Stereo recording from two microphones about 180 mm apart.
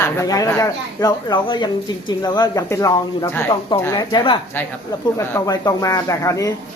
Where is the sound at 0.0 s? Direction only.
20° left (ahead or behind).